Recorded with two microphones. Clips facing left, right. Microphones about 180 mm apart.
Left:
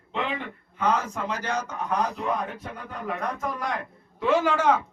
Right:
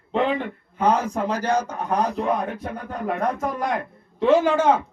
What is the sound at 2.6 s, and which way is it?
Speech, 50° right (ahead or behind).